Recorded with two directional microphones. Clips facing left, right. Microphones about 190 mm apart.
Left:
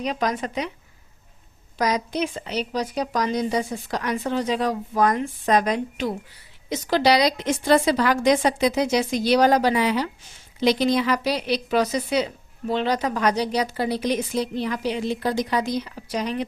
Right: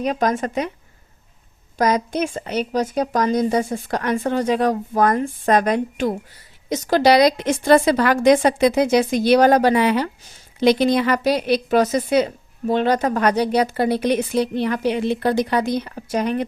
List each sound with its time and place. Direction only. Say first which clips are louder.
0.0 s a woman's voice: right 5 dB; 50° right (ahead or behind)
1.8 s a woman's voice: right 4 dB; 50° right (ahead or behind)